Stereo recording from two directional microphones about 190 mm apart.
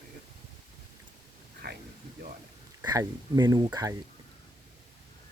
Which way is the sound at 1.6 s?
60° right (ahead or behind).